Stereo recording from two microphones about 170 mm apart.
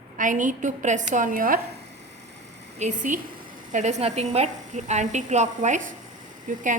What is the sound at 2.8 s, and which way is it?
A woman's voice, 45° right (ahead or behind).